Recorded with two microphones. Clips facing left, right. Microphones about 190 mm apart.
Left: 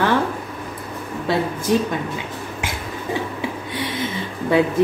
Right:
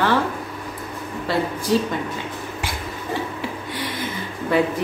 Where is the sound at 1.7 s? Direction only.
20° left (ahead or behind).